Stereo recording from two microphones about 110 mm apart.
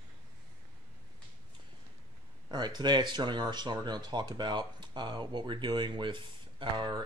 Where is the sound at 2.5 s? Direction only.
40° right (ahead or behind).